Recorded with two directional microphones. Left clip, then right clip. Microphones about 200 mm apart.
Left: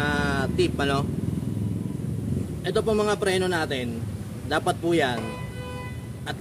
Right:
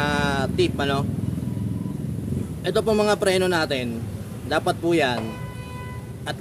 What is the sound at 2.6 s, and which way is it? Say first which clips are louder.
Speech: right 3 dB; 20° right (ahead or behind).